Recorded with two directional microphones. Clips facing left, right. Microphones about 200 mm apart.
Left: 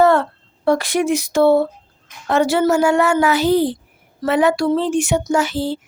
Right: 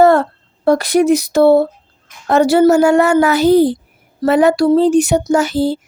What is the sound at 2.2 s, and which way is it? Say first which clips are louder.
Speech: right 6 dB; 40° right (ahead or behind).